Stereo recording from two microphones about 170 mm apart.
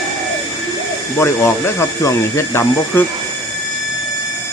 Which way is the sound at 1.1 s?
15° left (ahead or behind).